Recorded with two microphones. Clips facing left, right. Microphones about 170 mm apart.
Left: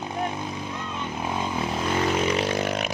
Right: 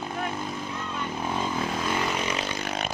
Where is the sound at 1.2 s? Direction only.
10° left (ahead or behind).